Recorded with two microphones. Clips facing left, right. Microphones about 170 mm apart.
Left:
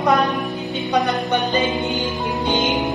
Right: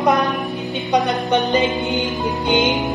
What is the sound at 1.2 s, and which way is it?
Music, 20° right (ahead or behind).